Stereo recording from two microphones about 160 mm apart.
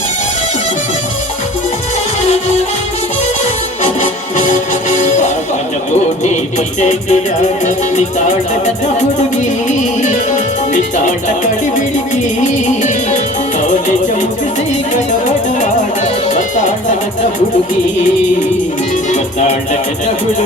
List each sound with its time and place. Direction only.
3.8 s music: 50° left (ahead or behind)
6.7 s music: 45° left (ahead or behind)
10.0 s music: 50° left (ahead or behind)
16.3 s music: 50° left (ahead or behind)
19.1 s music: 50° left (ahead or behind)